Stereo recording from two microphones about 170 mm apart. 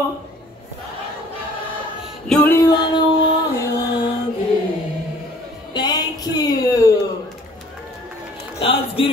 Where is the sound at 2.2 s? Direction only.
10° left (ahead or behind).